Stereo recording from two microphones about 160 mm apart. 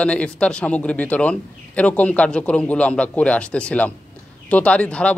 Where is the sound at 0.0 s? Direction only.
5° left (ahead or behind).